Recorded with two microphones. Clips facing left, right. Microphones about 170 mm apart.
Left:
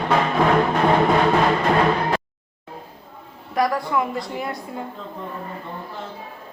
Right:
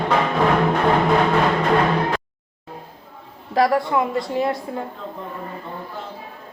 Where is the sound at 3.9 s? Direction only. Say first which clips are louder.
Right 2 dB; 25° right (ahead or behind).